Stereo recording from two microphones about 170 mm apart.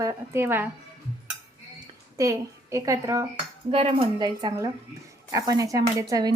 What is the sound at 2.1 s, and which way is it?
A woman's voice, 20° right (ahead or behind).